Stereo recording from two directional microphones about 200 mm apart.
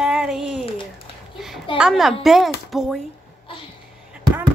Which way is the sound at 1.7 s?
Centre (ahead or behind).